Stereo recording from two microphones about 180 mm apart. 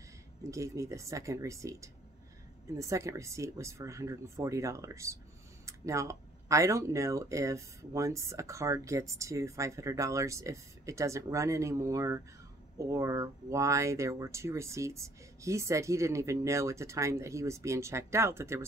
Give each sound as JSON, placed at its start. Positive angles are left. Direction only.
{"t": 0.4, "sound": "speech", "side_deg": -15}